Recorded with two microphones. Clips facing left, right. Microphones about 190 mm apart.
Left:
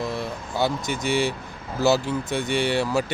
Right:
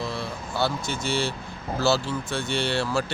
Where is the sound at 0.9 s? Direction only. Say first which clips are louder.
Left 4 dB; 15° left (ahead or behind).